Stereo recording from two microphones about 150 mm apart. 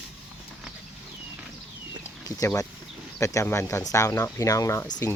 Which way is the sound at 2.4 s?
20° left (ahead or behind).